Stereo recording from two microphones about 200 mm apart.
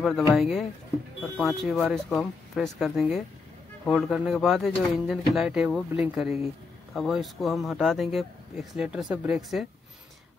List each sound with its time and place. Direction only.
0.4 s speech: centre (ahead or behind)